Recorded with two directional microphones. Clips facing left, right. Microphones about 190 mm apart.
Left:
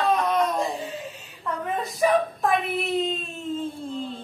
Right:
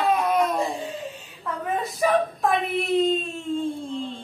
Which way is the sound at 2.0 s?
Centre (ahead or behind).